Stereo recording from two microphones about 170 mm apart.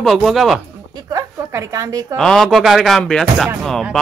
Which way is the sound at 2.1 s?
5° left (ahead or behind).